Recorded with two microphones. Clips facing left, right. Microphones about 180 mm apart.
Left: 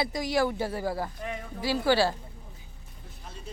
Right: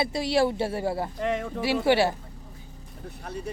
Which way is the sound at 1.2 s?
90° right.